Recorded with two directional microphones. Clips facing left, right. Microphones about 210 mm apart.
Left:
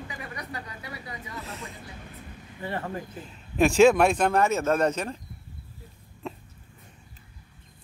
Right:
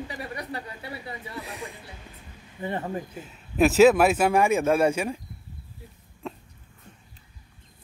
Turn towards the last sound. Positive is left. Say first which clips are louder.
# even
turn(degrees=0)  # may be behind; listen again after turning